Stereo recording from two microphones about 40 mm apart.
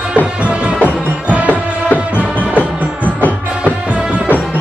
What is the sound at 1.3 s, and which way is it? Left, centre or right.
Music, right.